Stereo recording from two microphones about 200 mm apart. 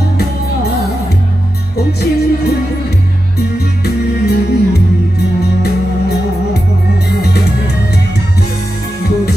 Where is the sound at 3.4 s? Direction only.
55° left (ahead or behind).